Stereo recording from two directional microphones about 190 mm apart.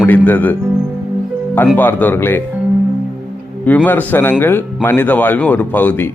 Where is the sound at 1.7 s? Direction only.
10° left (ahead or behind).